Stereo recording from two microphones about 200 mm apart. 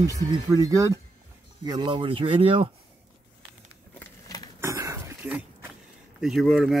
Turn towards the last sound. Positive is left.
turn(degrees=0)  # may be behind; listen again after turning